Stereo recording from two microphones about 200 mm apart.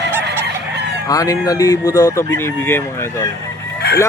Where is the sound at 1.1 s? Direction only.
15° left (ahead or behind).